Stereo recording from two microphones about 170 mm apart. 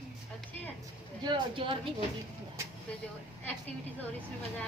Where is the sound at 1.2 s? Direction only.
30° right (ahead or behind).